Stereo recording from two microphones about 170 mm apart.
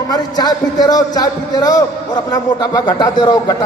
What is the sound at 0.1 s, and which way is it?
A man's voice, 20° left (ahead or behind).